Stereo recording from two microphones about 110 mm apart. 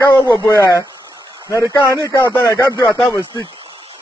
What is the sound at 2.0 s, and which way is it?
Speech, 25° left (ahead or behind).